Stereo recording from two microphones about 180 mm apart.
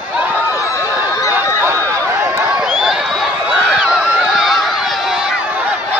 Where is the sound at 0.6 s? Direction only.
15° left (ahead or behind).